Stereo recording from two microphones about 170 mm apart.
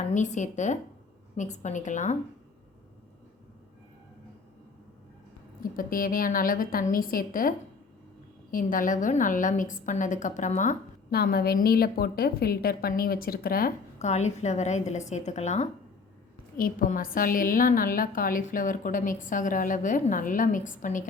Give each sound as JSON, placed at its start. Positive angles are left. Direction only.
{"t": 0.1, "sound": "a woman's voice", "side_deg": 45}
{"t": 5.7, "sound": "a woman's voice", "side_deg": 55}
{"t": 11.1, "sound": "a woman's voice", "side_deg": 65}
{"t": 14.0, "sound": "a woman's voice", "side_deg": 40}
{"t": 16.6, "sound": "a woman's voice", "side_deg": 60}